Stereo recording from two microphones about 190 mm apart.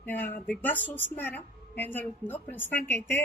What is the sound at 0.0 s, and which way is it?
A woman's voice, 10° left (ahead or behind).